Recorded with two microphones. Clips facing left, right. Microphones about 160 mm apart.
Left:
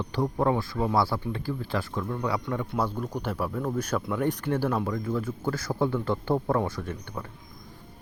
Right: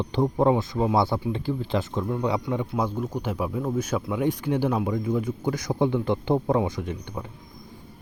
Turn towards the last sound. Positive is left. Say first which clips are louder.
# right 3 dB
turn(degrees=-15)  # may be behind; listen again after turning